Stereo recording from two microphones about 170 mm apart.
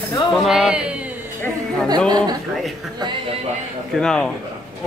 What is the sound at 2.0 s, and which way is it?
Speech, 25° right (ahead or behind).